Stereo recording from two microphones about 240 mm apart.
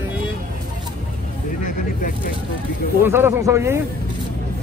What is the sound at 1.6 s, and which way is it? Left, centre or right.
Vehicle, left.